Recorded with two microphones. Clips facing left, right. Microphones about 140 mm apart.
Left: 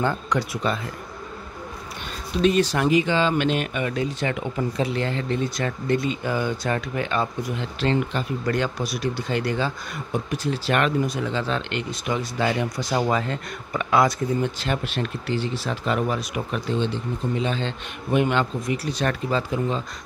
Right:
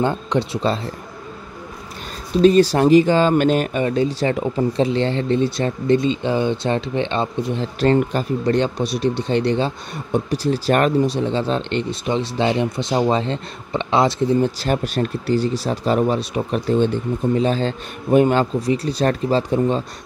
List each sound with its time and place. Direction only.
0.0 s speech: 25° right (ahead or behind)
2.4 s speech: 35° right (ahead or behind)
8.8 s speech: 30° right (ahead or behind)